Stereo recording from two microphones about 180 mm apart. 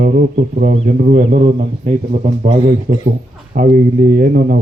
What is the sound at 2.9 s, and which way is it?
A man's voice, 60° right (ahead or behind).